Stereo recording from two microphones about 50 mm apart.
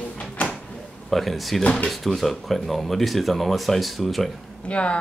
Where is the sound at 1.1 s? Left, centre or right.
Centre.